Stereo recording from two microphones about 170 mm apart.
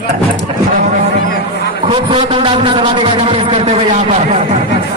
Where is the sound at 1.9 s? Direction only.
30° right (ahead or behind).